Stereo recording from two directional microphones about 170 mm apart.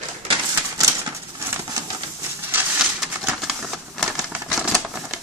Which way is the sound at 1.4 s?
15° right (ahead or behind).